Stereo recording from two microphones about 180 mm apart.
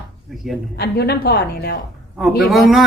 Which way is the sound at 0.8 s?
65° left (ahead or behind).